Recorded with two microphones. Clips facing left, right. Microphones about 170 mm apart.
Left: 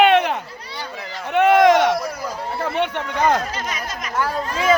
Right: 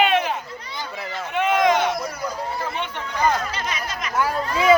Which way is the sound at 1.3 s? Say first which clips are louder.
Left 6 dB; 65° left (ahead or behind).